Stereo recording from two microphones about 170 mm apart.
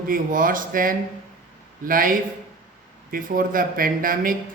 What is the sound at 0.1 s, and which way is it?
Speech, 55° right (ahead or behind).